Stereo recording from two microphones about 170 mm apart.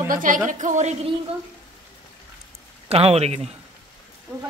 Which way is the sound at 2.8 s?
35° right (ahead or behind).